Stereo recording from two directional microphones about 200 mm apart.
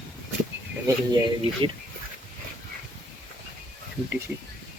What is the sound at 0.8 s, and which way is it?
Speech, 20° right (ahead or behind).